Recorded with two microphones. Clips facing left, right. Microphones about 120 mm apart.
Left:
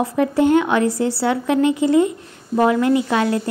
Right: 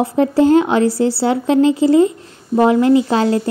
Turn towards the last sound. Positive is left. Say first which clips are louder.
# right 4 dB
turn(degrees=-30)  # may be behind; listen again after turning